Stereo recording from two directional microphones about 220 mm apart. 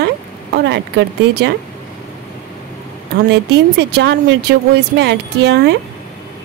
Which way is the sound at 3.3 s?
50° right (ahead or behind).